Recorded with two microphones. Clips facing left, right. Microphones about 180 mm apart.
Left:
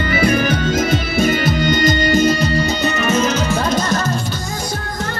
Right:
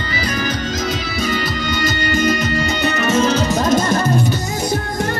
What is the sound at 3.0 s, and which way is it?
Music, 30° right (ahead or behind).